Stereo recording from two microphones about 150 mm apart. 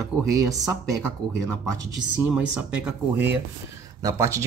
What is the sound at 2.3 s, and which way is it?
Speech, 10° right (ahead or behind).